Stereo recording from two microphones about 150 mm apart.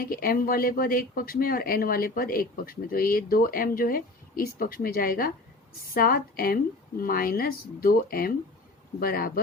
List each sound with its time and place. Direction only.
0.0 s speech: 75° left (ahead or behind)